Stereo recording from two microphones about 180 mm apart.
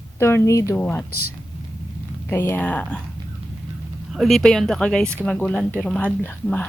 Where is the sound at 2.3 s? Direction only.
10° left (ahead or behind).